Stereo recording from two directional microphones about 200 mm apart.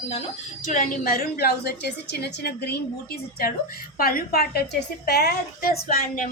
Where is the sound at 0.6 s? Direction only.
40° left (ahead or behind).